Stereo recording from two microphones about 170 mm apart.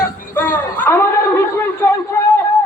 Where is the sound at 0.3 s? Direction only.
10° left (ahead or behind).